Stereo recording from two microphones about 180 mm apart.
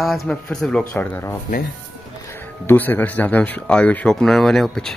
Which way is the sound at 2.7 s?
10° left (ahead or behind).